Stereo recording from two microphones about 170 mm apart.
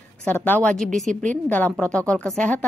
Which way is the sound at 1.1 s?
45° right (ahead or behind).